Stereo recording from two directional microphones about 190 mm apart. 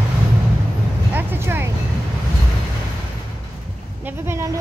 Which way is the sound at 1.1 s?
10° right (ahead or behind).